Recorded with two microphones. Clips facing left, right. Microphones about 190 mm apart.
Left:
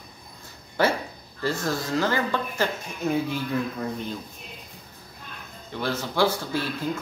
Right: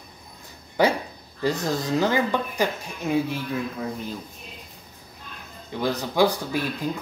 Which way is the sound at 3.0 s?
5° right (ahead or behind).